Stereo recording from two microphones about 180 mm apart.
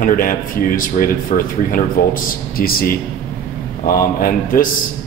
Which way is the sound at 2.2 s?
55° left (ahead or behind).